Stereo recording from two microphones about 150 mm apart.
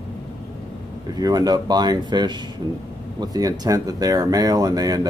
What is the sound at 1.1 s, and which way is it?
Speech, 25° right (ahead or behind).